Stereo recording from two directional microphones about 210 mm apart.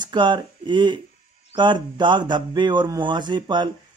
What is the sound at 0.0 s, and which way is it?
Speech, 20° right (ahead or behind).